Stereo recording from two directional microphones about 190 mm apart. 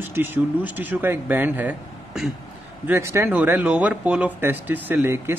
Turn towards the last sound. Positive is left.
turn(degrees=-10)  # may be behind; listen again after turning